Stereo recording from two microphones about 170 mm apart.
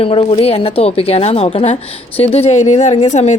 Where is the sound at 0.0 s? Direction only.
35° left (ahead or behind).